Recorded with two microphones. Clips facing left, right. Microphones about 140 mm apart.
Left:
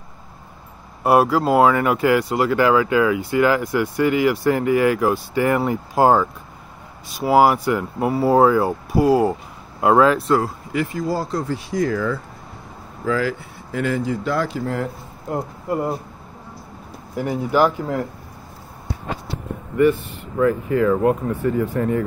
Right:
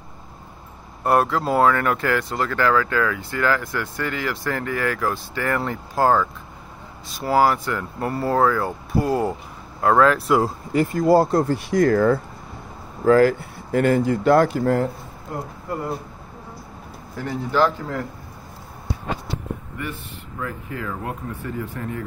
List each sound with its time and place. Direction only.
1.0 s speech: 5° left (ahead or behind)
7.2 s speech: 10° left (ahead or behind)
10.0 s speech: centre (ahead or behind)
10.4 s speech: 40° right (ahead or behind)
17.2 s speech: 15° left (ahead or behind)
20.3 s speech: 70° left (ahead or behind)